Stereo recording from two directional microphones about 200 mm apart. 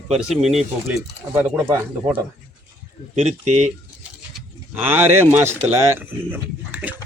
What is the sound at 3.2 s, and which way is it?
Speech, 35° right (ahead or behind).